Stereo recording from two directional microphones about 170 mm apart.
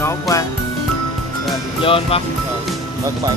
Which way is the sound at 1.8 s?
30° left (ahead or behind).